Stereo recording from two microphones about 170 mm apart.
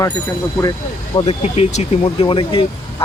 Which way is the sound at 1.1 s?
35° left (ahead or behind).